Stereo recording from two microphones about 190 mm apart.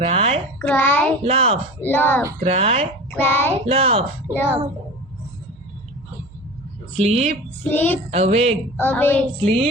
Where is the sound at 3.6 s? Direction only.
30° right (ahead or behind).